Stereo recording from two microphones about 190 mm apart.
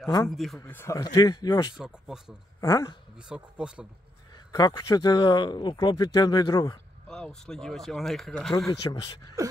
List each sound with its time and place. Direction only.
0.0 s speech: 15° left (ahead or behind)
0.3 s speech: centre (ahead or behind)
0.6 s speech: 15° left (ahead or behind)
1.8 s speech: 5° right (ahead or behind)
2.6 s speech: 20° left (ahead or behind)
3.2 s speech: 5° right (ahead or behind)
4.5 s speech: 20° left (ahead or behind)
7.1 s speech: 5° left (ahead or behind)